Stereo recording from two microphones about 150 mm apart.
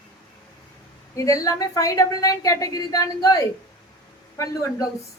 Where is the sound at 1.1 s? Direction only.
20° left (ahead or behind).